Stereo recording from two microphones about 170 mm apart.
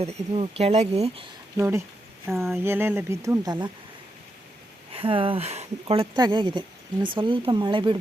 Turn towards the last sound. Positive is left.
turn(degrees=-30)  # may be behind; listen again after turning